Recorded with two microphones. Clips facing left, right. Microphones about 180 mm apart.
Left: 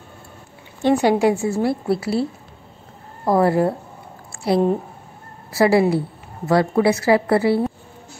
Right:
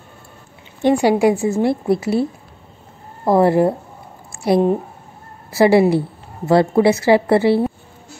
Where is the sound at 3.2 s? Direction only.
25° right (ahead or behind).